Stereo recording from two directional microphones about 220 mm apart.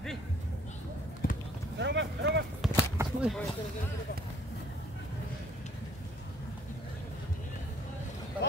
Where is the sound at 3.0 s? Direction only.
10° right (ahead or behind).